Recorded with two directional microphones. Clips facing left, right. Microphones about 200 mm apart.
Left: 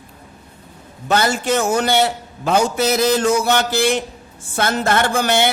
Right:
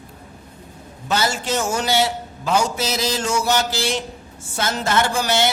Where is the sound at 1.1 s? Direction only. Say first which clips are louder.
Left 4 dB; 55° left (ahead or behind).